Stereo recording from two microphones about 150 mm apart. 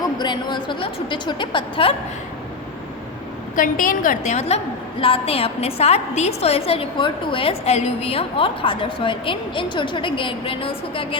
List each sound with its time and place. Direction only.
0.0 s a woman's voice: 30° left (ahead or behind)
3.5 s a woman's voice: 65° left (ahead or behind); by 11.2 s 35° left (ahead or behind)